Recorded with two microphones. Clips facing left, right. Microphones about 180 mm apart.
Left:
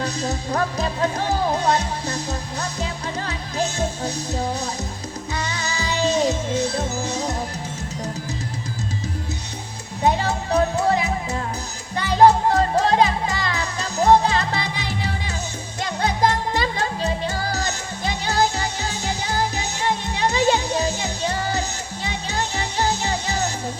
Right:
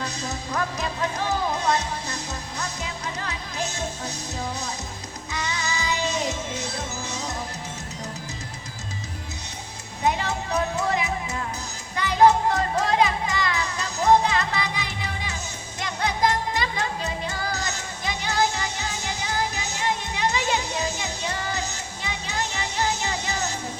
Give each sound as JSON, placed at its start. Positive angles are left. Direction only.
{"t": 0.0, "sound": "music", "side_deg": 30}
{"t": 10.0, "sound": "music", "side_deg": 30}